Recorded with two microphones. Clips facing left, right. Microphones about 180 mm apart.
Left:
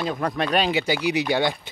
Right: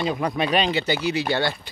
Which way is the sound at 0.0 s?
5° right (ahead or behind).